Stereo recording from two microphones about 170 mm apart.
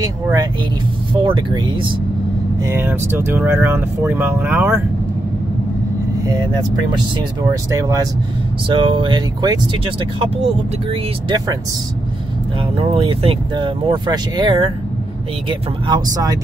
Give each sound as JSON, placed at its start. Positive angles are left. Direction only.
{"t": 0.0, "sound": "speech", "side_deg": -20}
{"t": 2.6, "sound": "speech", "side_deg": -15}
{"t": 7.7, "sound": "speech", "side_deg": -20}
{"t": 12.7, "sound": "speech", "side_deg": -35}
{"t": 15.9, "sound": "speech", "side_deg": -20}